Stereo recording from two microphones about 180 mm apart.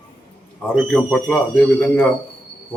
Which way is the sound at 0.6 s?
5° left (ahead or behind).